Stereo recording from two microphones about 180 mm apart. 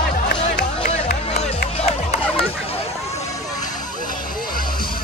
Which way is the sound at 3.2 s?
20° left (ahead or behind).